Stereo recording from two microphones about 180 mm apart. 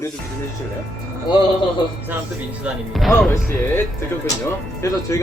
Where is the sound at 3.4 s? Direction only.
10° left (ahead or behind).